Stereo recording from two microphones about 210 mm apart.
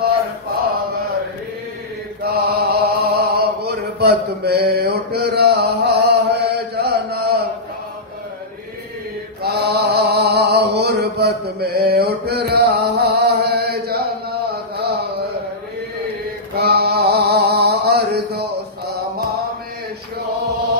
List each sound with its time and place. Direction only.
2.2 s mantra: 50° right (ahead or behind)
9.4 s mantra: 50° right (ahead or behind)
16.5 s mantra: 50° right (ahead or behind)